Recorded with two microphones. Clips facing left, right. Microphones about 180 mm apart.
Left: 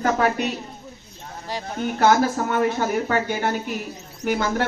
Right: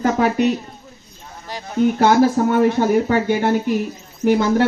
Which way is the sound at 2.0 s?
20° right (ahead or behind).